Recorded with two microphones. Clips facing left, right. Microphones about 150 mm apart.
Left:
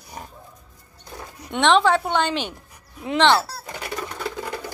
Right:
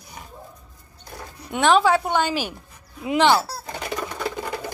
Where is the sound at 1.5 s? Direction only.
5° right (ahead or behind).